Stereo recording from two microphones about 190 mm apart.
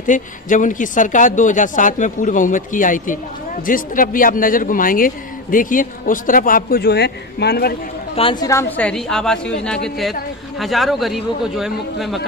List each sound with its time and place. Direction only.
0.0 s speech: 40° left (ahead or behind); by 7.7 s 60° left (ahead or behind)
8.2 s a woman's voice: 25° left (ahead or behind); by 12.2 s centre (ahead or behind)